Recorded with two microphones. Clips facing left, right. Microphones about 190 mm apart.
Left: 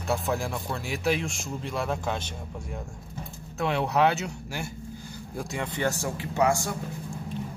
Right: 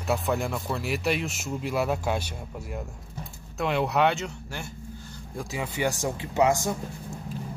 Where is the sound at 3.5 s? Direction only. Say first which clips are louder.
Even; centre (ahead or behind).